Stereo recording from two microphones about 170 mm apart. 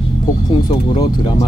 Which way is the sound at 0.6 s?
25° left (ahead or behind).